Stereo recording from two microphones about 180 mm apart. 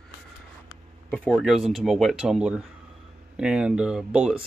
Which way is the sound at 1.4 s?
Centre (ahead or behind).